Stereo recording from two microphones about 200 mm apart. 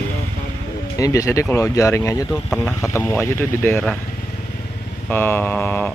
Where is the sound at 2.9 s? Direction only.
15° left (ahead or behind).